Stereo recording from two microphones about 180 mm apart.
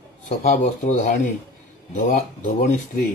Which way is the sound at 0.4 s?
40° left (ahead or behind).